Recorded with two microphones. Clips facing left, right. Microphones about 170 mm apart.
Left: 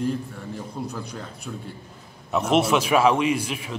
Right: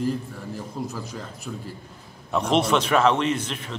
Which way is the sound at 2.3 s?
5° left (ahead or behind).